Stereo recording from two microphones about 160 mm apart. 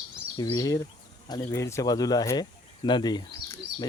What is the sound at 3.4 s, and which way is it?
Bird, 20° left (ahead or behind).